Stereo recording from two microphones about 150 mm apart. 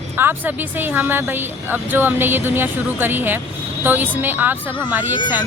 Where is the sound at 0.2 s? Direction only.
15° right (ahead or behind).